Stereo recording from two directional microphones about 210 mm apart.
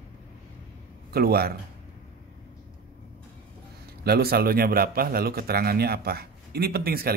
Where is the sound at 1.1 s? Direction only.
50° right (ahead or behind).